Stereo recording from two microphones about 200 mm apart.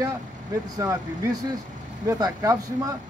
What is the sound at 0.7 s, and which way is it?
Speech, 15° right (ahead or behind).